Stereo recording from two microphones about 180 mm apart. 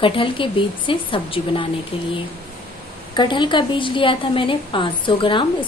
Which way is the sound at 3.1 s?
25° left (ahead or behind).